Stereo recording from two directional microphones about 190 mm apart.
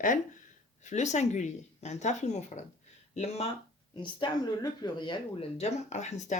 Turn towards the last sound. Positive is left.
turn(degrees=40)  # may be behind; listen again after turning